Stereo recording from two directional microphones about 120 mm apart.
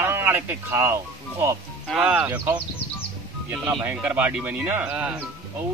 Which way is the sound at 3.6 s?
10° right (ahead or behind).